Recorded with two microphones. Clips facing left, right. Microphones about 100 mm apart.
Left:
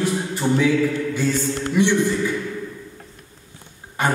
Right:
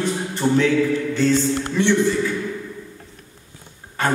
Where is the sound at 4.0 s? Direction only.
15° left (ahead or behind).